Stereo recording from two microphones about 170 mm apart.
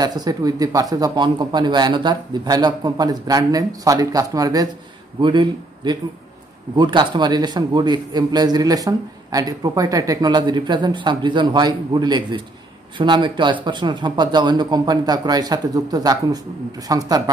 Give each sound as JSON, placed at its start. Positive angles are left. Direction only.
{"t": 0.0, "sound": "a man's voice", "side_deg": -25}